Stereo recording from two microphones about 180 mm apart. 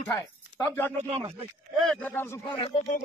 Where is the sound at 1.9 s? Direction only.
10° left (ahead or behind).